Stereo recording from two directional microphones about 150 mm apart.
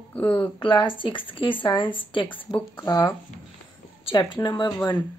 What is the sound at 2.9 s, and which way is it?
Speech, 25° left (ahead or behind).